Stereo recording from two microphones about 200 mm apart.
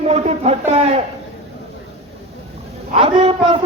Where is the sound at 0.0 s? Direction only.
30° right (ahead or behind).